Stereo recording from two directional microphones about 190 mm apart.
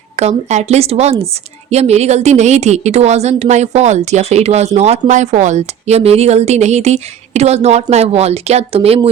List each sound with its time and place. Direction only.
0.2 s a woman's voice: 35° right (ahead or behind)